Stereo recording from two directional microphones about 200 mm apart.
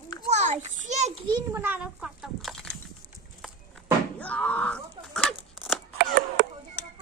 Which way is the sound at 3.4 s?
Centre (ahead or behind).